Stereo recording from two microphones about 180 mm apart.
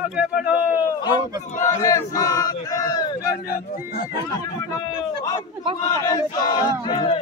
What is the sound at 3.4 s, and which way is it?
Speech, 55° left (ahead or behind).